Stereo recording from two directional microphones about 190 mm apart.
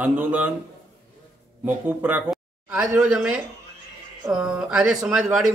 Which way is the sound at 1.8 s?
10° right (ahead or behind).